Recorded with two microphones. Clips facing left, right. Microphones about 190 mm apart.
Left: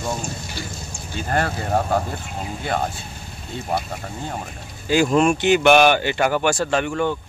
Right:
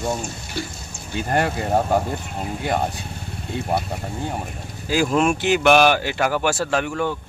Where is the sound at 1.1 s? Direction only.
15° right (ahead or behind).